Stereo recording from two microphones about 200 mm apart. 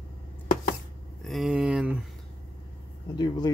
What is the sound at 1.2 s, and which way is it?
Speech, centre (ahead or behind).